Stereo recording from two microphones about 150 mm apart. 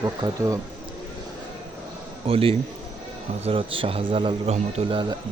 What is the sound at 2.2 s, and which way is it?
Speech, 40° right (ahead or behind).